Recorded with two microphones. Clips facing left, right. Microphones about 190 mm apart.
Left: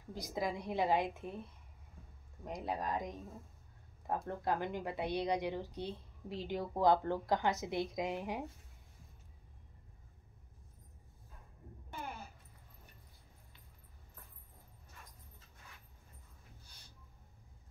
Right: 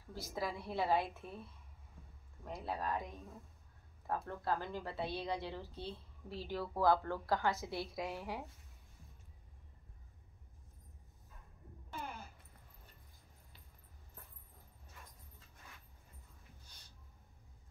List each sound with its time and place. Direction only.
0.1 s a woman's voice: 15° left (ahead or behind)
2.4 s a woman's voice: 15° left (ahead or behind)
4.1 s a woman's voice: 20° left (ahead or behind)